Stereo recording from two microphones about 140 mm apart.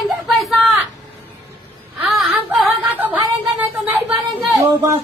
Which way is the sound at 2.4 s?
15° right (ahead or behind).